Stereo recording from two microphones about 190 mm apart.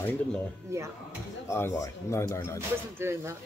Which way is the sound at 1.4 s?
15° left (ahead or behind).